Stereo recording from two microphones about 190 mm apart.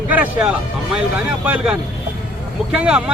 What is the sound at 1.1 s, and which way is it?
Speech, 5° right (ahead or behind).